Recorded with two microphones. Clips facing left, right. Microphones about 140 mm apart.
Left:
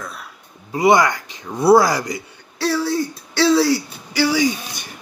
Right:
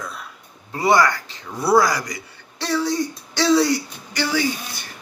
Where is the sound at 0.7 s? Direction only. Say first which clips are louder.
Left 3 dB; 20° left (ahead or behind).